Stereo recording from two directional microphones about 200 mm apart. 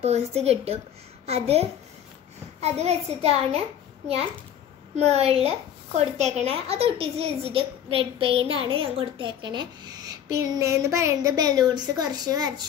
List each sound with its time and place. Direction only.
0.0 s a child's voice: 30° right (ahead or behind)
4.9 s a woman's voice: 30° right (ahead or behind)